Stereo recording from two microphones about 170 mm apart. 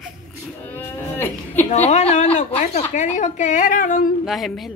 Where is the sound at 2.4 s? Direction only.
40° left (ahead or behind).